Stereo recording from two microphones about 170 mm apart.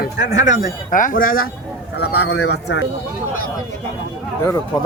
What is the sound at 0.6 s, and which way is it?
Speech, 50° left (ahead or behind).